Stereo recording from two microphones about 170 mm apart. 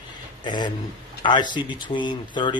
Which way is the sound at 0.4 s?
25° left (ahead or behind).